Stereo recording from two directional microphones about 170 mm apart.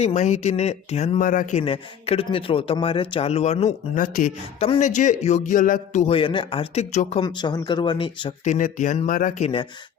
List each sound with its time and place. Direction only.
0.0 s speech: 45° left (ahead or behind)
1.6 s speech: 35° left (ahead or behind)
4.0 s a man's voice: 50° left (ahead or behind)
4.6 s a man's voice: 40° left (ahead or behind)
7.2 s speech: 25° left (ahead or behind)
8.4 s a man's voice: 50° left (ahead or behind)